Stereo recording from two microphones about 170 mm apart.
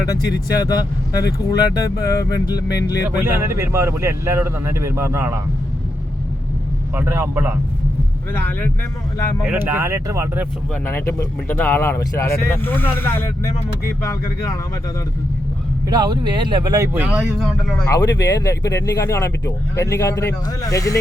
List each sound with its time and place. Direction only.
0.7 s speech: 20° left (ahead or behind)
3.2 s speech: 15° right (ahead or behind)
6.9 s speech: 15° right (ahead or behind)
8.3 s speech: 10° left (ahead or behind)
9.4 s speech: 10° right (ahead or behind)
10.8 s speech: 15° left (ahead or behind)
15.9 s speech: 25° right (ahead or behind)
16.9 s speech: 5° right (ahead or behind)
17.8 s speech: 20° left (ahead or behind)